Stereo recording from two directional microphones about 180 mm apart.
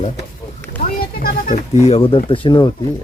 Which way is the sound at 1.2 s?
55° left (ahead or behind).